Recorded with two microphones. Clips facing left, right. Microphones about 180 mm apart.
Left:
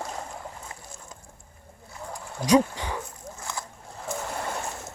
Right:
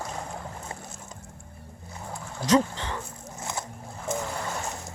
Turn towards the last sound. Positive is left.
turn(degrees=-20)  # may be behind; listen again after turning